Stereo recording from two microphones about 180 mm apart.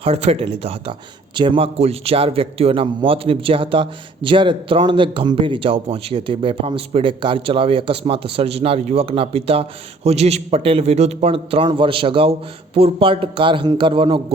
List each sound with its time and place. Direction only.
0.0 s a man's voice: 35° right (ahead or behind)